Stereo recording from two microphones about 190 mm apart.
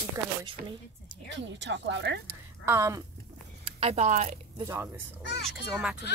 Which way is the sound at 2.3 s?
15° right (ahead or behind).